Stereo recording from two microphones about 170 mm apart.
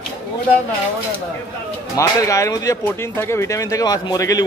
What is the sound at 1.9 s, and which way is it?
Speech, 20° left (ahead or behind).